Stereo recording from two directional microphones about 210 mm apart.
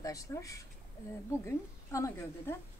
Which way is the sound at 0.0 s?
15° left (ahead or behind).